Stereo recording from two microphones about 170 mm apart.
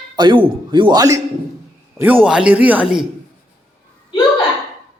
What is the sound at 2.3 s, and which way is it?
Speech, 5° right (ahead or behind).